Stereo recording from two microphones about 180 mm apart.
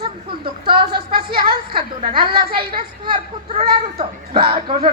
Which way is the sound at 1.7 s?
30° right (ahead or behind).